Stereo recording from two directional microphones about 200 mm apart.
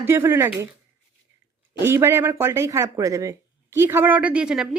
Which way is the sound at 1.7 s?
10° right (ahead or behind).